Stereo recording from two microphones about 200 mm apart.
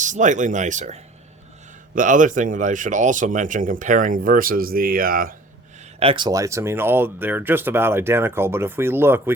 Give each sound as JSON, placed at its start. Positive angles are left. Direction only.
{"t": 0.0, "sound": "speech", "side_deg": -40}
{"t": 6.0, "sound": "speech", "side_deg": -25}